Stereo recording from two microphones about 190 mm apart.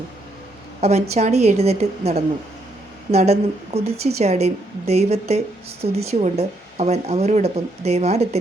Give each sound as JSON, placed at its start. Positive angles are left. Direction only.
{"t": 0.8, "sound": "speech", "side_deg": -35}